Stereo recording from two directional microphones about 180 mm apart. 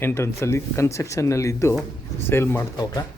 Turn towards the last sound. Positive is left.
turn(degrees=15)  # may be behind; listen again after turning